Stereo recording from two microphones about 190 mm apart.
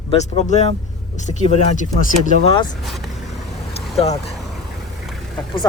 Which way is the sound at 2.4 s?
25° left (ahead or behind).